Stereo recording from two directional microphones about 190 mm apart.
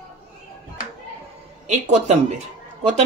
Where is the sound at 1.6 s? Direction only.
40° right (ahead or behind).